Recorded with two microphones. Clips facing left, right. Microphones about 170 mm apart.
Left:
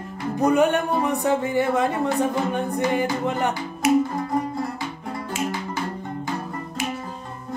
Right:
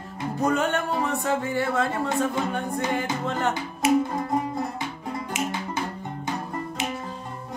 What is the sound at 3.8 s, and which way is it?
Music, 25° right (ahead or behind).